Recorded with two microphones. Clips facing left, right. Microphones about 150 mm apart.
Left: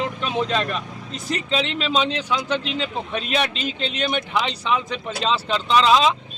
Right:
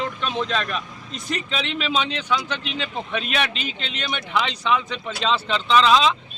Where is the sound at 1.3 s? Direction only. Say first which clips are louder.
Left 4 dB; 35° left (ahead or behind).